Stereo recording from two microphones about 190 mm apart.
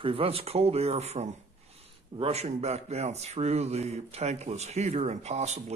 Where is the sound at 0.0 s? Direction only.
30° right (ahead or behind).